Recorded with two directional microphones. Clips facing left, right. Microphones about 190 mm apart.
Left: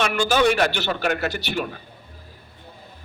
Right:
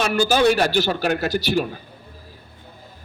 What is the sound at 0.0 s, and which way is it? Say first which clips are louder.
A man's voice: right 2 dB; 40° right (ahead or behind).